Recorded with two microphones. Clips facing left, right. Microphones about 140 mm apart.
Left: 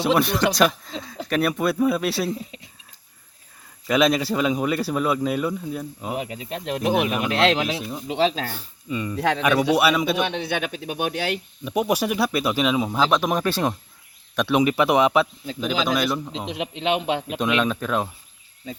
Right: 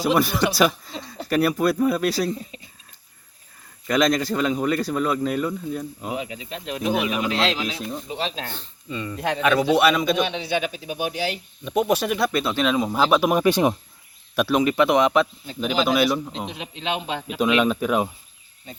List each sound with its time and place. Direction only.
0.0 s speech: centre (ahead or behind)
3.8 s speech: 5° left (ahead or behind)
6.1 s speech: 60° left (ahead or behind)
7.7 s speech: 5° left (ahead or behind)
8.0 s speech: 90° left
8.5 s speech: 15° left (ahead or behind)
9.1 s speech: 90° left
9.7 s speech: 10° left (ahead or behind)
10.2 s speech: 55° left (ahead or behind)
11.6 s speech: 10° left (ahead or behind)
12.9 s speech: 5° right (ahead or behind)
14.3 s speech: centre (ahead or behind)
16.5 s a man's voice: 70° left (ahead or behind)
17.4 s speech: 5° right (ahead or behind)